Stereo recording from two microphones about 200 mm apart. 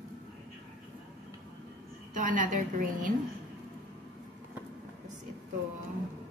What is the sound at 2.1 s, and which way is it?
A woman's voice, 40° right (ahead or behind).